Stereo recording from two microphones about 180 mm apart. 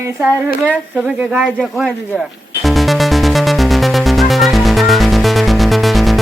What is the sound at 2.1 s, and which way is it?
Music, centre (ahead or behind).